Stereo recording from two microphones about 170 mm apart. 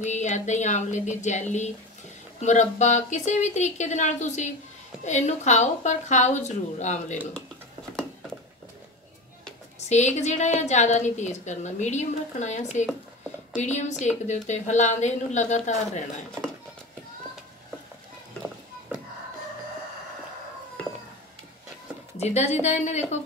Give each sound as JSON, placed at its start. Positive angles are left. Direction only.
{"t": 0.0, "sound": "a woman's voice", "side_deg": 45}
{"t": 9.8, "sound": "a woman's voice", "side_deg": 45}
{"t": 22.2, "sound": "a woman's voice", "side_deg": 40}